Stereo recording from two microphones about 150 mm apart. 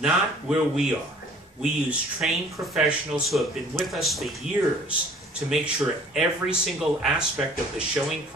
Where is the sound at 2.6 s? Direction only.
20° right (ahead or behind).